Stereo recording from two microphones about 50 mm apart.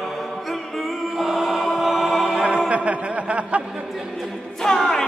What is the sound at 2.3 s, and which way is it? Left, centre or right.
Chant, right.